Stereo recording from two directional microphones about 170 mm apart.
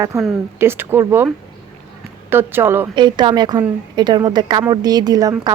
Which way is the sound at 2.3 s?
15° right (ahead or behind).